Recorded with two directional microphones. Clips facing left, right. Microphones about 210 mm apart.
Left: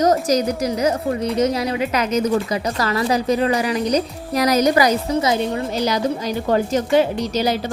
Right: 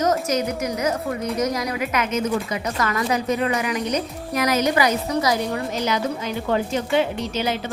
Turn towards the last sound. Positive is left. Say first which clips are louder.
# left 4 dB
turn(degrees=35)  # may be behind; listen again after turning